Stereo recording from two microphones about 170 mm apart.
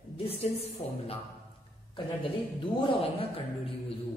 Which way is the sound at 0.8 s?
35° left (ahead or behind).